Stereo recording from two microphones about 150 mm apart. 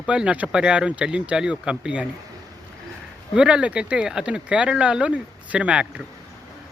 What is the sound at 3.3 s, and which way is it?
Speech, 5° right (ahead or behind).